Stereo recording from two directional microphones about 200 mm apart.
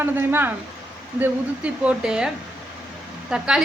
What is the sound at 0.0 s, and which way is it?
Speech, 10° right (ahead or behind).